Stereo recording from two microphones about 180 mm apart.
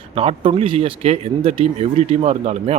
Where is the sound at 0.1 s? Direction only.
35° right (ahead or behind).